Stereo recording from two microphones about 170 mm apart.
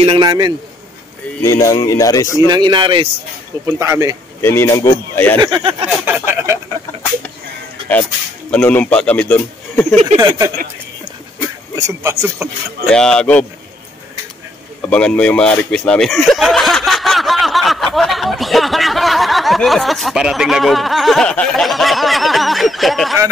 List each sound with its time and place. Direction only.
0.0 s speech: 30° right (ahead or behind)
1.4 s speech: 20° left (ahead or behind)
2.4 s speech: 25° right (ahead or behind)
3.6 s speech: 20° right (ahead or behind)
4.4 s a man's voice: 15° left (ahead or behind)
5.1 s speech: 10° left (ahead or behind)
5.4 s speech: 30° right (ahead or behind)
6.0 s a sound: 15° right (ahead or behind)
8.5 s a man's voice: 5° left (ahead or behind)
11.7 s a man's voice: 15° right (ahead or behind)
12.8 s speech: 5° left (ahead or behind)
14.8 s speech: 5° left (ahead or behind)